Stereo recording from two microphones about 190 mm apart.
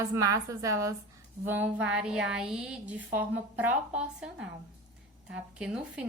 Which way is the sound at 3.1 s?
10° right (ahead or behind).